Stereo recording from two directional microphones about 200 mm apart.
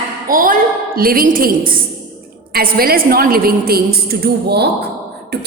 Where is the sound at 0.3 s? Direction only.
45° right (ahead or behind).